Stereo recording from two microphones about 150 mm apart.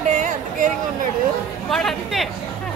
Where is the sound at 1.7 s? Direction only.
Centre (ahead or behind).